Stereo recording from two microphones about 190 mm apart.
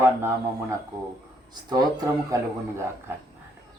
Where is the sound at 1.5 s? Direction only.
20° right (ahead or behind).